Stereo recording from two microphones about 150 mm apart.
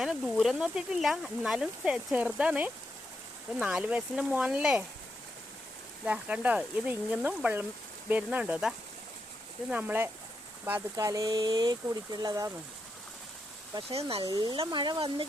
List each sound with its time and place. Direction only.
0.0 s speech: centre (ahead or behind)
6.1 s speech: 10° right (ahead or behind)
10.9 s speech: 20° right (ahead or behind)
13.9 s speech: 40° right (ahead or behind)
14.3 s speech: 30° right (ahead or behind)